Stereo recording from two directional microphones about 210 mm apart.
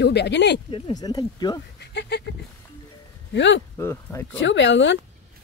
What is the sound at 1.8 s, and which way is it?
Speech, 55° left (ahead or behind).